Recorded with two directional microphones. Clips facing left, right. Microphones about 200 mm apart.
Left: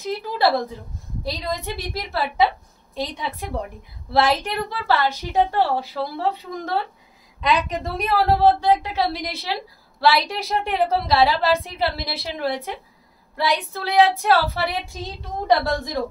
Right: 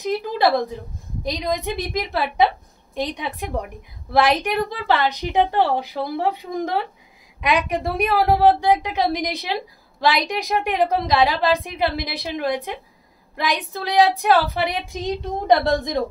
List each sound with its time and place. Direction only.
0.0 s a woman's voice: 15° right (ahead or behind)